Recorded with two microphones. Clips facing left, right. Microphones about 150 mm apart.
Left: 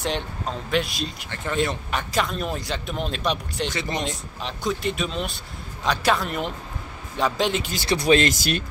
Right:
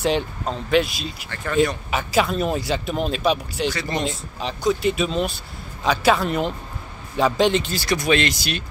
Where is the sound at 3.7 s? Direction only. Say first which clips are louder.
Right 2 dB; 20° left (ahead or behind).